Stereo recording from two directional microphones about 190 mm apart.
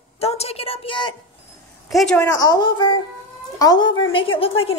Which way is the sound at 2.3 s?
20° left (ahead or behind).